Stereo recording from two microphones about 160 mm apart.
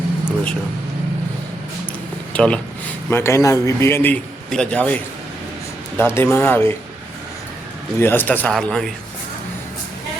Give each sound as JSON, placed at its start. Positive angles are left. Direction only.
{"t": 2.3, "sound": "a man's voice", "side_deg": 5}
{"t": 6.0, "sound": "a man's voice", "side_deg": 15}
{"t": 7.9, "sound": "a man's voice", "side_deg": 15}